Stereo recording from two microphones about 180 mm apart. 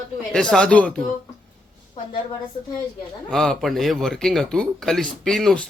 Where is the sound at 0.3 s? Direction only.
5° left (ahead or behind).